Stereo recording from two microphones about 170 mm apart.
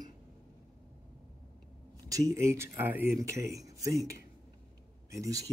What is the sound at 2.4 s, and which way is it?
Speech, 15° right (ahead or behind).